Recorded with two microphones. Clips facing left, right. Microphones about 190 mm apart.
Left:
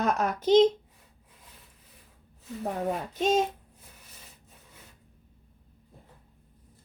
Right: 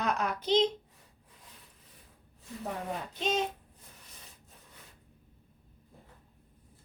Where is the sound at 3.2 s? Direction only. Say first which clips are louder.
Left 7 dB; 45° left (ahead or behind).